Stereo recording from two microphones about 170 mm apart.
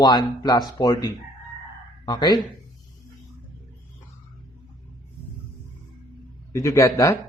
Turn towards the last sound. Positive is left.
turn(degrees=20)  # may be behind; listen again after turning